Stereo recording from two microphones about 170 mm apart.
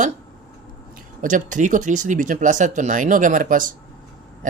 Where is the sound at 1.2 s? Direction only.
50° right (ahead or behind).